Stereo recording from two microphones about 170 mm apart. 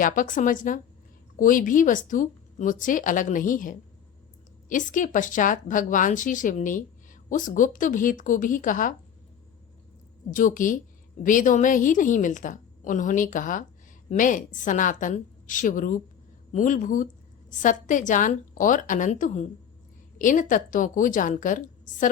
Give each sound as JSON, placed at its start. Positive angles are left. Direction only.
{"t": 0.0, "sound": "speech", "side_deg": 50}
{"t": 10.3, "sound": "speech", "side_deg": 50}